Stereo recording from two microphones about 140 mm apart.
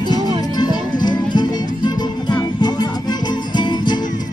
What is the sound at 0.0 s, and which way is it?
Music, 30° left (ahead or behind).